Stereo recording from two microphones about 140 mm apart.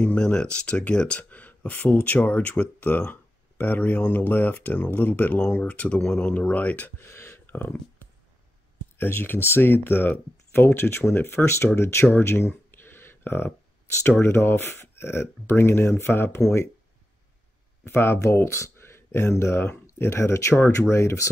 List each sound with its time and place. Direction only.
0.0 s speech: 5° left (ahead or behind)
8.9 s speech: 15° left (ahead or behind)
12.7 s a sound: 15° left (ahead or behind)
14.2 s speech: 15° left (ahead or behind)
17.8 s speech: 15° left (ahead or behind)